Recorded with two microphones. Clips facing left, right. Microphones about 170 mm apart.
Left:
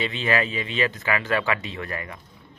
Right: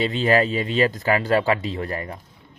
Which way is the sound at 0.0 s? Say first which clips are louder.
Right 5 dB; 40° right (ahead or behind).